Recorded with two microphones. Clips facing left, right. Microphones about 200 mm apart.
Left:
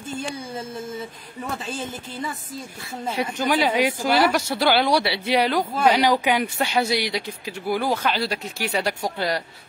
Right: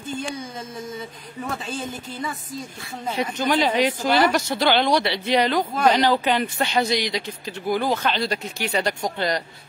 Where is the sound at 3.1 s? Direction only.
5° left (ahead or behind).